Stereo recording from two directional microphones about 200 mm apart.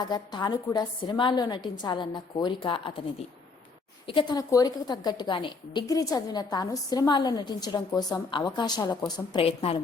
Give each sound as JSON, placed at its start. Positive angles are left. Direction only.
{"t": 0.1, "sound": "a woman's voice", "side_deg": 20}
{"t": 4.0, "sound": "a woman's voice", "side_deg": 25}